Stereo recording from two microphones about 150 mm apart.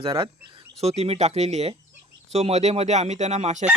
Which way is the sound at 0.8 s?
45° right (ahead or behind).